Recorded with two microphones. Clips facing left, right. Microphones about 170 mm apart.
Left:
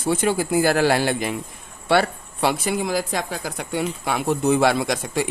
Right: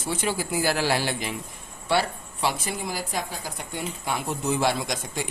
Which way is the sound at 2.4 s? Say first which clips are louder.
Left 6 dB; 75° left (ahead or behind).